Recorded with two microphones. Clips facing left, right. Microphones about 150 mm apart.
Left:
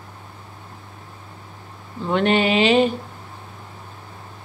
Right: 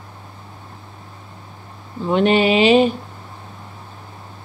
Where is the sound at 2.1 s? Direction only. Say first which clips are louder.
Right 3 dB; 15° right (ahead or behind).